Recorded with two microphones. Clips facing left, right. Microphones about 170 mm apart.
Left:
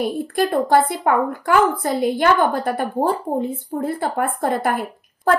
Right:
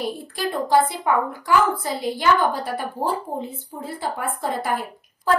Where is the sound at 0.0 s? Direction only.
55° left (ahead or behind).